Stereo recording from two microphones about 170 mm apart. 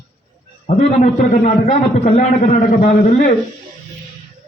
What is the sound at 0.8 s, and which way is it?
A man's voice, 40° left (ahead or behind).